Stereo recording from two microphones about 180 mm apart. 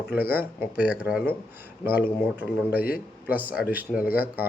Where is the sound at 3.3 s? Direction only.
10° right (ahead or behind).